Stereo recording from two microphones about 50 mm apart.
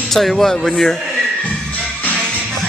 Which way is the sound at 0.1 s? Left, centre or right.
Centre.